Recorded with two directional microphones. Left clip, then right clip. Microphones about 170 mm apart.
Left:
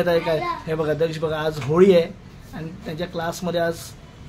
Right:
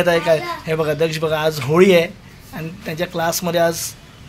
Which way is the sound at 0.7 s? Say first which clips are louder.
Right 5 dB; 20° right (ahead or behind).